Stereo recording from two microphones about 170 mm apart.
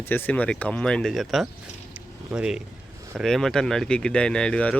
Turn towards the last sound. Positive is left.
turn(degrees=5)  # may be behind; listen again after turning